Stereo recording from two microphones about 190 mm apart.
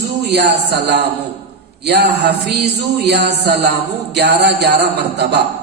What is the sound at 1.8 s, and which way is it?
Music, 60° right (ahead or behind).